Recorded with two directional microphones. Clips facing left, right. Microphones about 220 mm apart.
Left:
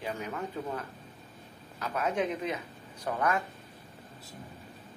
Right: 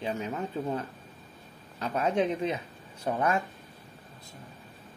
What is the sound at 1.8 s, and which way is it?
Speech, 30° right (ahead or behind).